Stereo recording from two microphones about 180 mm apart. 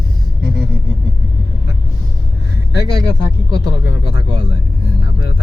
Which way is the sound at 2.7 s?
20° right (ahead or behind).